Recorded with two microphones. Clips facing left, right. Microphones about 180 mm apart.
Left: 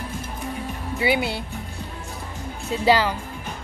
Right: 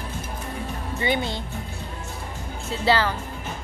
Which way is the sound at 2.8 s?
15° left (ahead or behind).